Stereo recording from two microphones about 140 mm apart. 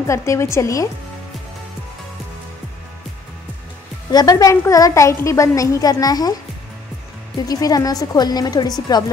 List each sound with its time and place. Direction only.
0.0 s a woman's voice: 20° left (ahead or behind)
4.1 s a woman's voice: 25° left (ahead or behind)
7.4 s a woman's voice: 25° left (ahead or behind)